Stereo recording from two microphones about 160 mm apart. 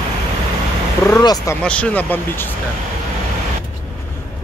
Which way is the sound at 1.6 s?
10° left (ahead or behind).